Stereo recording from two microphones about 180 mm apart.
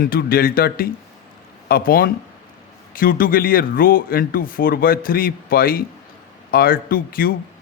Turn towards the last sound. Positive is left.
turn(degrees=55)  # may be behind; listen again after turning